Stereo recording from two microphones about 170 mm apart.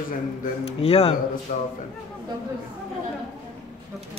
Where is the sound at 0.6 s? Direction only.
35° left (ahead or behind).